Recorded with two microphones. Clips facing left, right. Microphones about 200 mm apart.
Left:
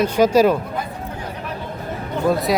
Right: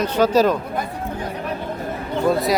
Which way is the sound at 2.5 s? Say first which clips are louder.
Left 1 dB; centre (ahead or behind).